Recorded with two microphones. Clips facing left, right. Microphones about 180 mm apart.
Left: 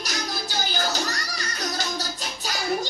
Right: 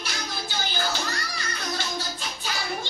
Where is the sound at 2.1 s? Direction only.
40° left (ahead or behind).